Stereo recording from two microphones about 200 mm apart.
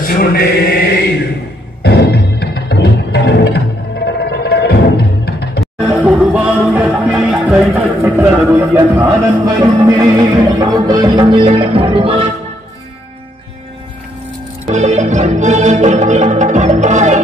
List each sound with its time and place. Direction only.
0.0 s chant: 45° left (ahead or behind)
1.8 s music: 55° left (ahead or behind)
5.6 s music: 5° right (ahead or behind); by 12.3 s 25° right (ahead or behind)
14.7 s music: 35° right (ahead or behind)